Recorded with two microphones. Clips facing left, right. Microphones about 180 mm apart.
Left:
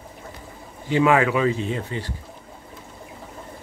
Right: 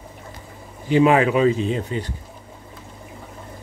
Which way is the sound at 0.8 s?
15° right (ahead or behind).